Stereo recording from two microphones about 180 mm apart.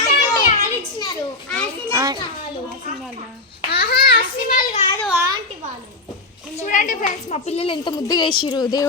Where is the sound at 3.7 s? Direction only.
60° left (ahead or behind).